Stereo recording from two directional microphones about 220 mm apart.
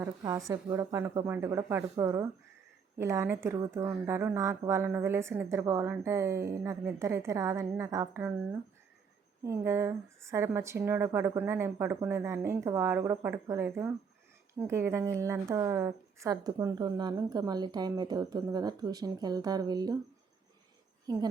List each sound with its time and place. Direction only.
0.0 s a woman's voice: 15° right (ahead or behind)
9.4 s a woman's voice: 10° right (ahead or behind)